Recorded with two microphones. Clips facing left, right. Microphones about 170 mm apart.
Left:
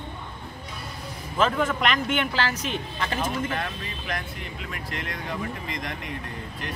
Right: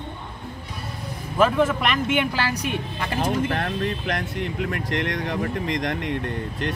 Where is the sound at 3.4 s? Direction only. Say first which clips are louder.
Right 6 dB; 55° right (ahead or behind).